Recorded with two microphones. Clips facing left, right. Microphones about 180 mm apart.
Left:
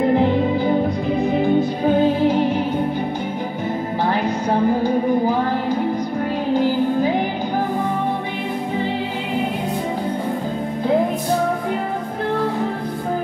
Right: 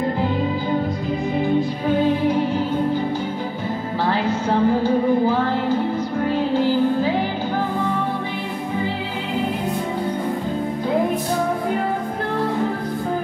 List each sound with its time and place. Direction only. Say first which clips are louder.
2.2 s music: left 2 dB; 20° left (ahead or behind)
4.1 s music: right 1 dB; 15° left (ahead or behind)